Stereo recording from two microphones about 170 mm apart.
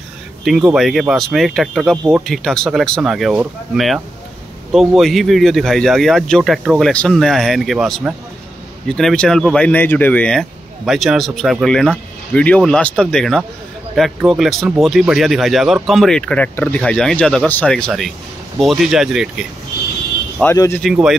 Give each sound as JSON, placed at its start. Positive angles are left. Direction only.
{"t": 0.5, "sound": "speech", "side_deg": 0}
{"t": 20.5, "sound": "speech", "side_deg": 15}
{"t": 20.8, "sound": "speech", "side_deg": 0}